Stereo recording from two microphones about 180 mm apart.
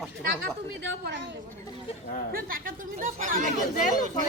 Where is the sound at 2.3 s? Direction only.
55° right (ahead or behind).